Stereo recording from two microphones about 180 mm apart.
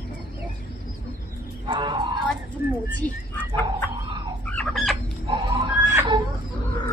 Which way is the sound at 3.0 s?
10° left (ahead or behind).